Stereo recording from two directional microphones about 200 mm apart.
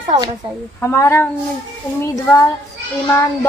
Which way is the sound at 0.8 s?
15° left (ahead or behind).